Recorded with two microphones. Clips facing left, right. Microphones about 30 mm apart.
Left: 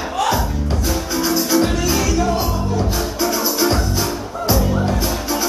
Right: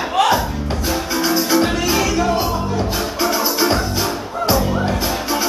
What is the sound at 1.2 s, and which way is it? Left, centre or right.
Music, centre.